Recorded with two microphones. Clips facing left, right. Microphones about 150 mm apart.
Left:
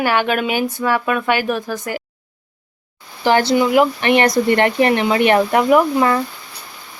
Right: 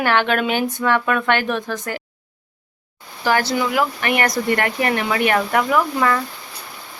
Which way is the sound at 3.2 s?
25° left (ahead or behind).